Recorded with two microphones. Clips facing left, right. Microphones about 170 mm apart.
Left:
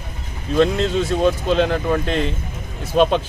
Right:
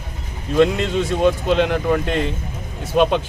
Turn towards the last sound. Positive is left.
turn(degrees=-15)  # may be behind; listen again after turning